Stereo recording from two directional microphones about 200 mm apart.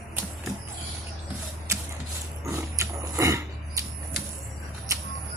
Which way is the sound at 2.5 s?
15° right (ahead or behind).